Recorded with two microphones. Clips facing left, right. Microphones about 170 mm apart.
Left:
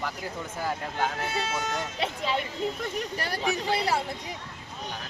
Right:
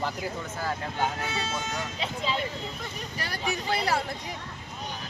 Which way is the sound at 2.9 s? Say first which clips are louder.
Left 5 dB; 55° left (ahead or behind).